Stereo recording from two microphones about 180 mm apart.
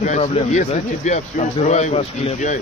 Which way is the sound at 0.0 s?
40° left (ahead or behind).